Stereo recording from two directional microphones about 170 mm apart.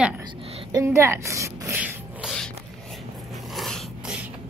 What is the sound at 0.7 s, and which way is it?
A woman's voice, 20° right (ahead or behind).